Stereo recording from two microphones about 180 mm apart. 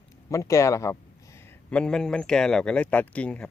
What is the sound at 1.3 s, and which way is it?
Speech, 5° left (ahead or behind).